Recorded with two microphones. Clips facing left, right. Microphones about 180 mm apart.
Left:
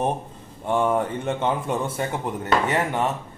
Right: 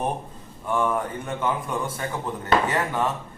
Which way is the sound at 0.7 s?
25° left (ahead or behind).